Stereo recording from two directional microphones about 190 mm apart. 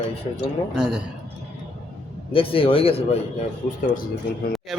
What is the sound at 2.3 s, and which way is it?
Speech, 30° left (ahead or behind).